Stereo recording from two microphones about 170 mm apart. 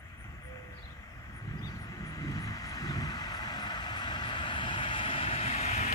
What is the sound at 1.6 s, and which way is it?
Vehicle, 20° left (ahead or behind).